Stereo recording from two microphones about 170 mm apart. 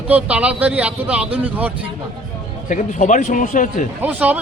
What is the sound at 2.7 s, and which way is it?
Speech, 50° left (ahead or behind).